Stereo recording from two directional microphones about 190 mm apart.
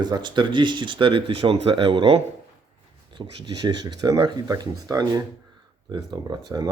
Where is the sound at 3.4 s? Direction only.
20° right (ahead or behind).